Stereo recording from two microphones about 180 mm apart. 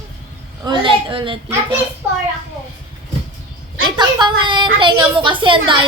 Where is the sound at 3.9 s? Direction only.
25° right (ahead or behind).